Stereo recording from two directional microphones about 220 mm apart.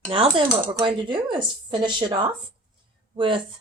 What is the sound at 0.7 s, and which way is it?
Speech, 15° right (ahead or behind).